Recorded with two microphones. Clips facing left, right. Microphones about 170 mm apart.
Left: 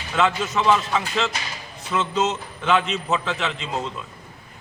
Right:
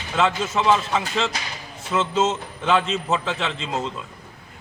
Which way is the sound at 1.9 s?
20° right (ahead or behind).